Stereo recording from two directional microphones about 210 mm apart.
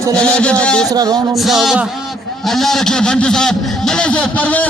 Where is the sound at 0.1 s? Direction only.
5° left (ahead or behind).